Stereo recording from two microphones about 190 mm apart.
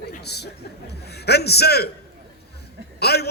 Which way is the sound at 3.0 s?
60° left (ahead or behind).